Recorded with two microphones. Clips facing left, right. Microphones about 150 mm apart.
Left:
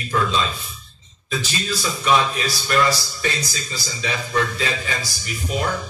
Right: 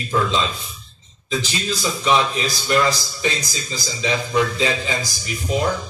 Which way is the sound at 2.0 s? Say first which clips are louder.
Even; 20° right (ahead or behind).